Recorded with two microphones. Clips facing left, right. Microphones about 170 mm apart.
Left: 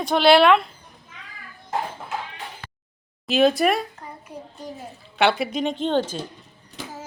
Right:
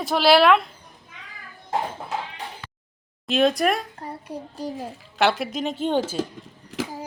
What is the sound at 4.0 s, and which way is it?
Child singing, 35° right (ahead or behind).